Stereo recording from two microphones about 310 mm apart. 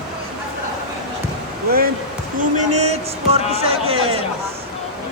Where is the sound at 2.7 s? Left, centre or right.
Right.